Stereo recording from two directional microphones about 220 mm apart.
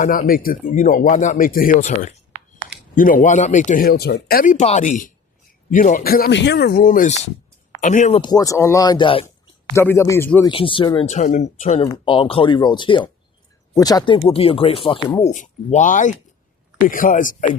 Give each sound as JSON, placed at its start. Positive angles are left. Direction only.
{"t": 0.0, "sound": "speech", "side_deg": 40}
{"t": 9.7, "sound": "speech", "side_deg": 10}
{"t": 10.5, "sound": "speech", "side_deg": 25}
{"t": 15.3, "sound": "speech", "side_deg": 35}